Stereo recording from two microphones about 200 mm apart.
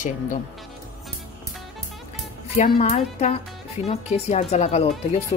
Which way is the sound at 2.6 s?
35° left (ahead or behind).